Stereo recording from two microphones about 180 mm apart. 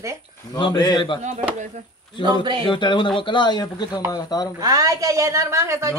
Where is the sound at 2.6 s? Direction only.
25° left (ahead or behind).